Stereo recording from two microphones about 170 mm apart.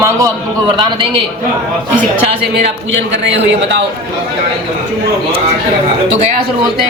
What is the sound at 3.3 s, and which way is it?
Speech, 90° right.